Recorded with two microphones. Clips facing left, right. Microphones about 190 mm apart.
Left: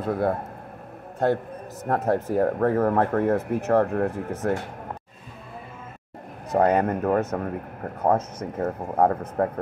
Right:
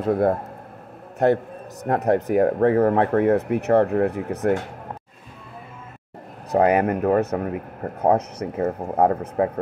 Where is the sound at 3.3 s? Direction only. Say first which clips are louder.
Right 3 dB; 65° right (ahead or behind).